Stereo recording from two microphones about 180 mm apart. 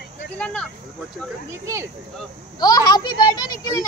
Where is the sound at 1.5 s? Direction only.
15° right (ahead or behind).